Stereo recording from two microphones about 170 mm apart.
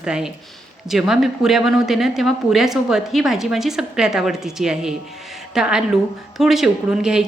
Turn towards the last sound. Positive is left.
turn(degrees=-5)  # may be behind; listen again after turning